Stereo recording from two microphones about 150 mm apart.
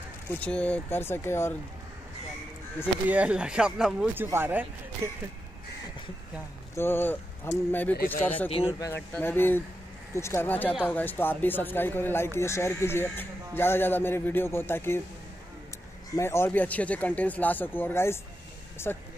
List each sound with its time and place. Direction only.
0.3 s speech: 10° left (ahead or behind)
3.1 s speech: 10° right (ahead or behind)
6.7 s speech: 15° left (ahead or behind)
8.5 s speech: 40° left (ahead or behind)
8.7 s speech: 20° left (ahead or behind)
16.2 s speech: 15° left (ahead or behind)